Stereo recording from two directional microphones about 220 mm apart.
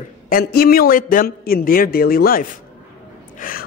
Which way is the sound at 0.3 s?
45° left (ahead or behind).